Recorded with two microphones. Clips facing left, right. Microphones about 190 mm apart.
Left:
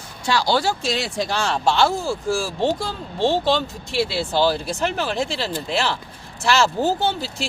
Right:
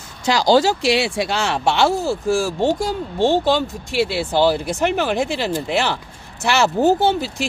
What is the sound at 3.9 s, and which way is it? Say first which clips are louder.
Speech: right 3 dB; 15° right (ahead or behind).